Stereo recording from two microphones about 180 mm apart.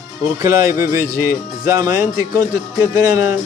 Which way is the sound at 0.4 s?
15° right (ahead or behind).